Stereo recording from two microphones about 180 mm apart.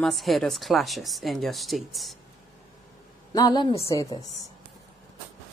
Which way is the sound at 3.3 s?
25° left (ahead or behind).